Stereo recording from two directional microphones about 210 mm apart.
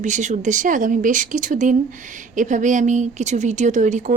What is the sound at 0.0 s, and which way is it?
Speech, 35° right (ahead or behind).